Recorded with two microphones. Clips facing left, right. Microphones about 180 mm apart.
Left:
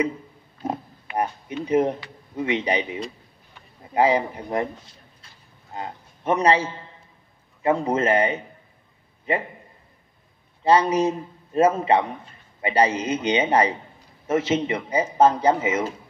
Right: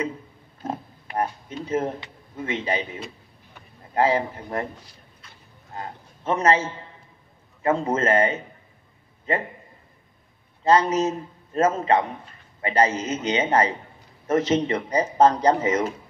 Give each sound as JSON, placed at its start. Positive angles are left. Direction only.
{"t": 0.6, "sound": "pig", "side_deg": 10}
{"t": 1.7, "sound": "a man's voice", "side_deg": 15}
{"t": 7.6, "sound": "speech", "side_deg": 15}
{"t": 10.6, "sound": "speech", "side_deg": 10}